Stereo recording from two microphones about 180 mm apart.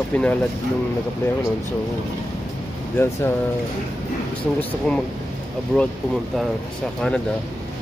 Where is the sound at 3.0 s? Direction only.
15° left (ahead or behind).